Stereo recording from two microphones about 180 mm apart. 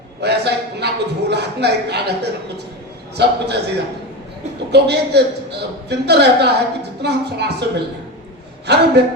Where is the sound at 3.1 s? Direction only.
65° right (ahead or behind).